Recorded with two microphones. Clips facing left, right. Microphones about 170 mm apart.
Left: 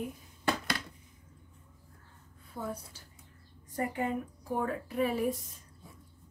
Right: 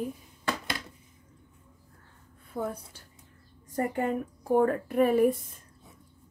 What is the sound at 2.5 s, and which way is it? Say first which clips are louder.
Speech: right 6 dB; 90° right.